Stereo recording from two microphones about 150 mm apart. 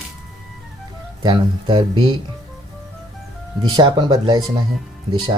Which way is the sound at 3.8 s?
30° right (ahead or behind).